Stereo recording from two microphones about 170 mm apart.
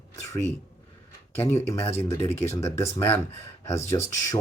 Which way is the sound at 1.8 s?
35° left (ahead or behind).